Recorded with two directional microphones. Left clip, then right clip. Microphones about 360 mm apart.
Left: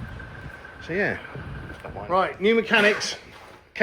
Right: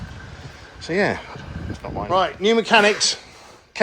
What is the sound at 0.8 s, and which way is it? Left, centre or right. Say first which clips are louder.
Speech: right 5 dB; centre.